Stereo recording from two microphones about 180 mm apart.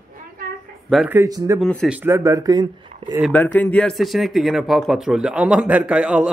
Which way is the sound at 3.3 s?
10° left (ahead or behind).